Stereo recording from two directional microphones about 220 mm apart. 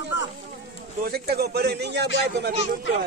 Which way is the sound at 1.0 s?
45° right (ahead or behind).